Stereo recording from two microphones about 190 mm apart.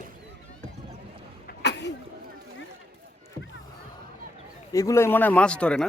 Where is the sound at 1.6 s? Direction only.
65° left (ahead or behind).